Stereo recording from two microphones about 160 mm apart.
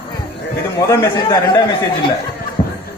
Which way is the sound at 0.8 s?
20° left (ahead or behind).